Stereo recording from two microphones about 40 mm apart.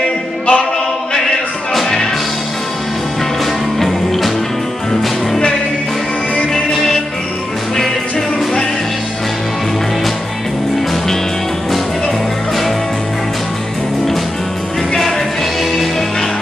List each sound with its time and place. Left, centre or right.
0.0 s music: left
1.7 s music: centre
3.8 s music: centre